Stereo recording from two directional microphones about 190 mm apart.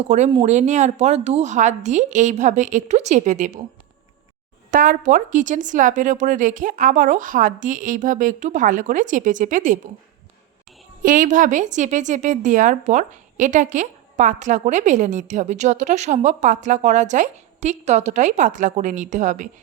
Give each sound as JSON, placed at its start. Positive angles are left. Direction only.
{"t": 0.1, "sound": "a woman's voice", "side_deg": -35}
{"t": 4.7, "sound": "speech", "side_deg": -45}
{"t": 11.0, "sound": "a woman's voice", "side_deg": -45}